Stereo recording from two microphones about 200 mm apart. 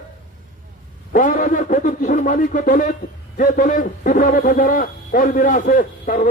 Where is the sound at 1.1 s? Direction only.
40° left (ahead or behind).